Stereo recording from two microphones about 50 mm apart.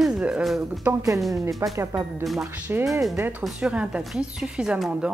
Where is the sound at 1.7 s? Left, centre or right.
Right.